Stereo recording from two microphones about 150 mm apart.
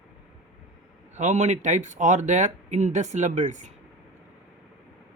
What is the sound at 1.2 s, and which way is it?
Speech, 50° right (ahead or behind).